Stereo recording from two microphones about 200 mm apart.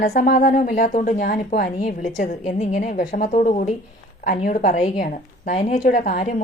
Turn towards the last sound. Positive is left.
turn(degrees=35)  # may be behind; listen again after turning